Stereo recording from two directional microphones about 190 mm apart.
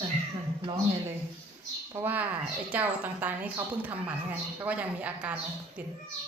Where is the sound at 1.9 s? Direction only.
10° right (ahead or behind).